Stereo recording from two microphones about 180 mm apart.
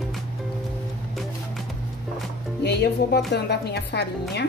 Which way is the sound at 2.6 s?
65° left (ahead or behind).